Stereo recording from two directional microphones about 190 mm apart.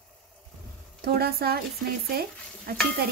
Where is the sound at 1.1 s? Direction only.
55° right (ahead or behind).